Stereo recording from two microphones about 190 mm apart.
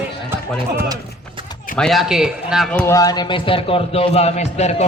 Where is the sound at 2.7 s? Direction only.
10° left (ahead or behind).